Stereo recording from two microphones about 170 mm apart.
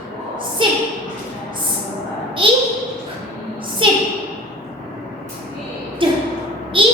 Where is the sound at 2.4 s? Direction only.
30° right (ahead or behind).